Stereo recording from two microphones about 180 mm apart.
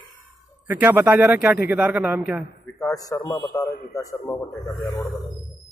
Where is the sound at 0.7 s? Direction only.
10° right (ahead or behind).